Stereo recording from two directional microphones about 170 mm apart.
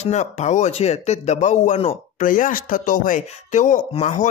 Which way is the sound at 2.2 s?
50° left (ahead or behind).